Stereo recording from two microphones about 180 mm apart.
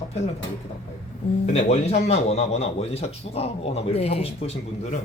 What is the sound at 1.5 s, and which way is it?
Speech, 35° left (ahead or behind).